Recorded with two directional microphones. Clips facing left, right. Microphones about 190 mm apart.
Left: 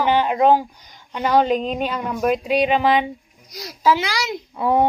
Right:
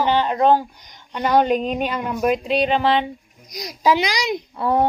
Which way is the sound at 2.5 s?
5° left (ahead or behind).